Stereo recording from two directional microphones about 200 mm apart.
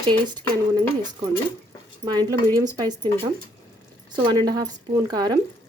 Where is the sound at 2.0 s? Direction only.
20° right (ahead or behind).